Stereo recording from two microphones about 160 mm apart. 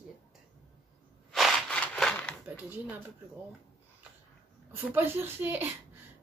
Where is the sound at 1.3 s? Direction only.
5° left (ahead or behind).